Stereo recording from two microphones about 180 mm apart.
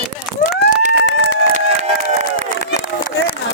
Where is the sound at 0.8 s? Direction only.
45° right (ahead or behind).